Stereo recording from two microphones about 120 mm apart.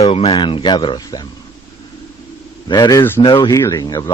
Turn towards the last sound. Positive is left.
turn(degrees=35)  # may be behind; listen again after turning